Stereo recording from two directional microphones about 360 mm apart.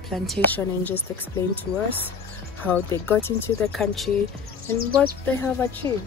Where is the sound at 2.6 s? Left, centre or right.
Centre.